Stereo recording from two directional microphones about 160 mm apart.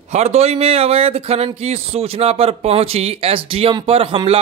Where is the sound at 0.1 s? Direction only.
45° right (ahead or behind).